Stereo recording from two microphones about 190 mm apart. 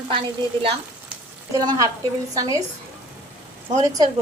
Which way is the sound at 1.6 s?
20° right (ahead or behind).